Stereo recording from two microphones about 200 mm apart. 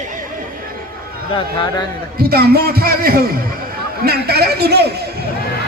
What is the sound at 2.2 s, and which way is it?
Speech, 50° right (ahead or behind).